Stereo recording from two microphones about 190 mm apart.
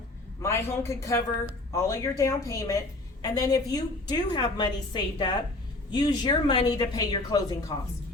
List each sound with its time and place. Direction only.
0.4 s a woman's voice: 15° left (ahead or behind)